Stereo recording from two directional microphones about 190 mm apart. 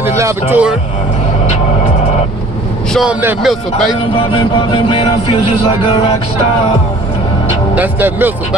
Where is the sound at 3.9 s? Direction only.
25° left (ahead or behind).